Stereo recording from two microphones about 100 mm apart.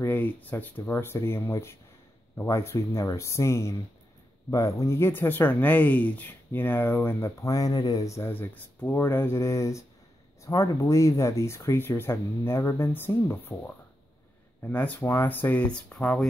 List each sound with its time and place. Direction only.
0.0 s speech: 20° left (ahead or behind)
14.6 s speech: 15° left (ahead or behind)